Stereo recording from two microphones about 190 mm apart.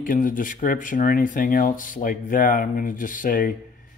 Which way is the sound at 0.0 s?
45° left (ahead or behind).